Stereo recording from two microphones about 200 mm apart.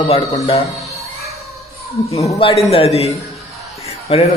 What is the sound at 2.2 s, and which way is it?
Speech, 15° left (ahead or behind).